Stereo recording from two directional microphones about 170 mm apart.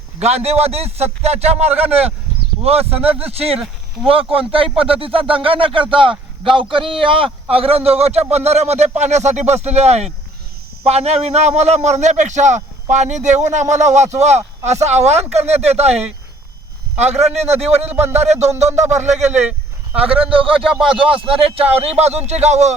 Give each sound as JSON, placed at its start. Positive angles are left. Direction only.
{"t": 0.2, "sound": "a man's voice", "side_deg": -40}
{"t": 17.0, "sound": "a man's voice", "side_deg": -40}
{"t": 19.3, "sound": "a sound", "side_deg": -10}
{"t": 20.3, "sound": "speech", "side_deg": -30}